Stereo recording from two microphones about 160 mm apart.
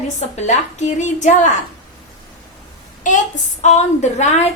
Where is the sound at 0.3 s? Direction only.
45° left (ahead or behind).